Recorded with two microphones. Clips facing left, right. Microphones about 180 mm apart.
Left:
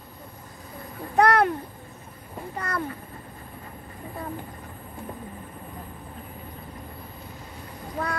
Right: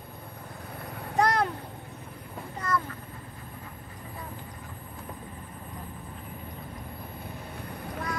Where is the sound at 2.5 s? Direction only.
65° left (ahead or behind).